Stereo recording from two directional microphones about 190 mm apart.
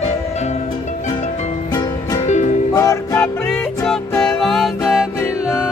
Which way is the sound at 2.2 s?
40° left (ahead or behind).